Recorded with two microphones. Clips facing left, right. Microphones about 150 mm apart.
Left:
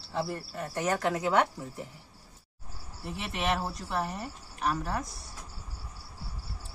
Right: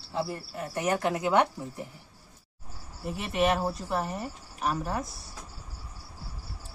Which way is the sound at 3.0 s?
Centre (ahead or behind).